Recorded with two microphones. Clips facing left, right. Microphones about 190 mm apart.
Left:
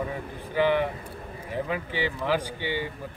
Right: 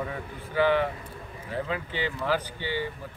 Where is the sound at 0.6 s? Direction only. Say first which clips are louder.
Even; 15° left (ahead or behind).